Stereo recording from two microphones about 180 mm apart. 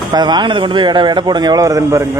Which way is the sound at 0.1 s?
25° right (ahead or behind).